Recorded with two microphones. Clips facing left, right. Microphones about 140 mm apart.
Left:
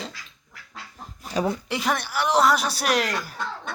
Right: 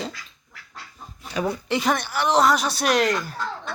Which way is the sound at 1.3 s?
35° left (ahead or behind).